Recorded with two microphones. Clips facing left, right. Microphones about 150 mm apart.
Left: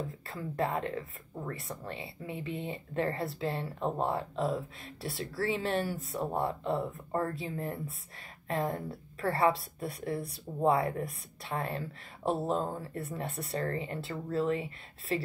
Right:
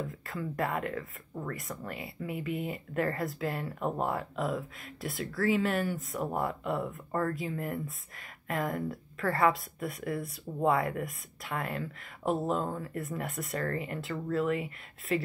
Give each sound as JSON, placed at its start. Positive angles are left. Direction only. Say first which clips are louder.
{"t": 0.3, "sound": "speech", "louder": "even", "side_deg": 30}